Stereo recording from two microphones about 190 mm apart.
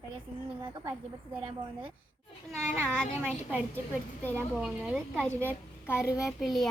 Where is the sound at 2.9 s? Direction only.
5° left (ahead or behind).